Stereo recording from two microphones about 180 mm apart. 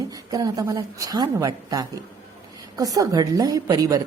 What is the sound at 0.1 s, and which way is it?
A woman's voice, 20° right (ahead or behind).